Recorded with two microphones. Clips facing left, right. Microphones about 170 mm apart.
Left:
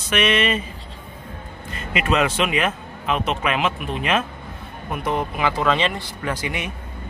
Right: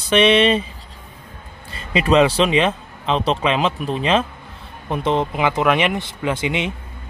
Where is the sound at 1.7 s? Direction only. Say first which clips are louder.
Right 6 dB; 30° right (ahead or behind).